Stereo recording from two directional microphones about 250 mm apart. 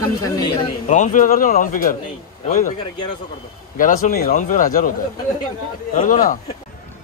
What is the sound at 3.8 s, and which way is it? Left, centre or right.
Speech, left.